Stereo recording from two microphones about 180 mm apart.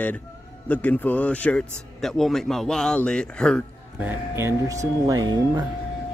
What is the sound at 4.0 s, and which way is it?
Speech, 10° right (ahead or behind).